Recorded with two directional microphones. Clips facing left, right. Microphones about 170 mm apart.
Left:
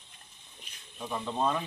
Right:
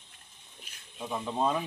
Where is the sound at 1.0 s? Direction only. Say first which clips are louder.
Right 1 dB; 5° right (ahead or behind).